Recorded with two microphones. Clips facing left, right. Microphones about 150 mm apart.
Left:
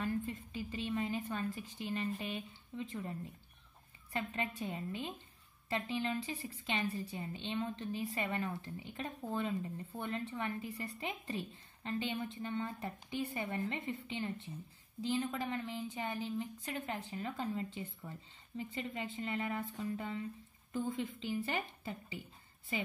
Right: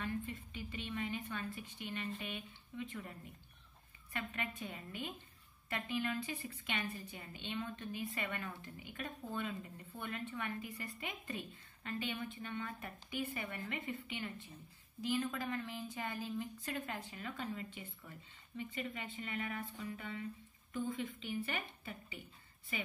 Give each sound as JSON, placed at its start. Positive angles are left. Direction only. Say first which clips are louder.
{"t": 0.0, "sound": "a woman's voice", "louder": "left 4 dB", "side_deg": 35}
{"t": 19.2, "sound": "a woman's voice", "louder": "left 4 dB", "side_deg": 30}
{"t": 21.3, "sound": "a woman's voice", "louder": "left 5 dB", "side_deg": 35}